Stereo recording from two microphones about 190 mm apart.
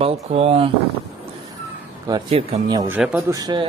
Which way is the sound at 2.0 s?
25° right (ahead or behind).